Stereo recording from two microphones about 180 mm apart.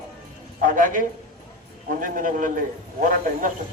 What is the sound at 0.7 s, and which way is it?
A man's voice, 50° right (ahead or behind).